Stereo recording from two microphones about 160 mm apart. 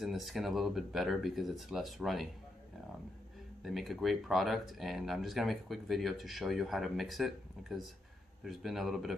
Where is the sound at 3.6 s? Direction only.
Centre (ahead or behind).